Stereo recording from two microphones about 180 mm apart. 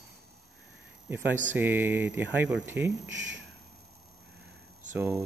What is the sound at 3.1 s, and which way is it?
Speech, 90° right.